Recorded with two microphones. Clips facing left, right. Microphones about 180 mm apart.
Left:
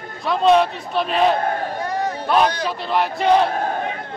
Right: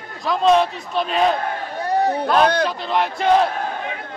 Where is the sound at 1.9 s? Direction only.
35° right (ahead or behind).